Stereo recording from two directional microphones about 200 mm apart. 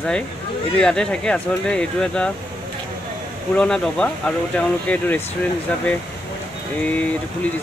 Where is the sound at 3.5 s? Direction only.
5° left (ahead or behind).